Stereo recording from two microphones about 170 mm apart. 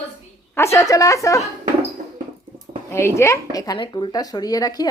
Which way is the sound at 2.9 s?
15° left (ahead or behind).